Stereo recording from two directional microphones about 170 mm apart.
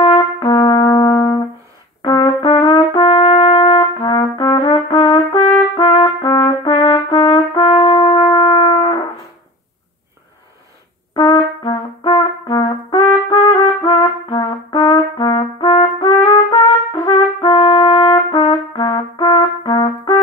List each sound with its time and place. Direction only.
0.0 s brass instrument: 25° left (ahead or behind)
11.1 s brass instrument: 25° left (ahead or behind)
13.4 s trumpet: 25° left (ahead or behind)